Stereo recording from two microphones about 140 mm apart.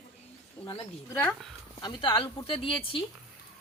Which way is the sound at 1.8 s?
35° left (ahead or behind).